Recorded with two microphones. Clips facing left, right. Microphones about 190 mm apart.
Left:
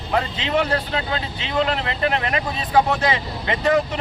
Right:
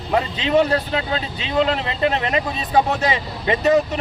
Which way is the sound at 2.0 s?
20° right (ahead or behind).